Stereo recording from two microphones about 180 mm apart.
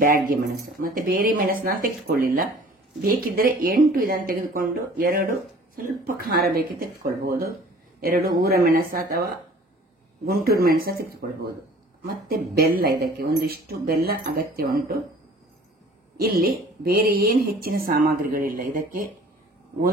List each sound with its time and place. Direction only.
0.0 s speech: 50° right (ahead or behind)
16.2 s speech: 55° right (ahead or behind)